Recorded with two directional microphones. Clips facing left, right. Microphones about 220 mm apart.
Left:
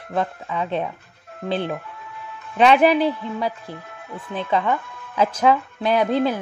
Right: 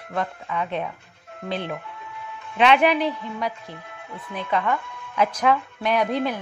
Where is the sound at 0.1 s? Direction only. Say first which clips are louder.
Left 3 dB; 25° left (ahead or behind).